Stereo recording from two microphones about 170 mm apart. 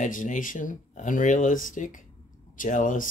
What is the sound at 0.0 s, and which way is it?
Speech, 50° left (ahead or behind).